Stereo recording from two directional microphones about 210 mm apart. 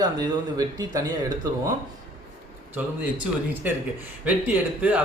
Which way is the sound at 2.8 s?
5° right (ahead or behind).